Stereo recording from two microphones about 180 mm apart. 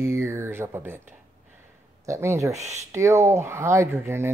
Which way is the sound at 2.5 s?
40° right (ahead or behind).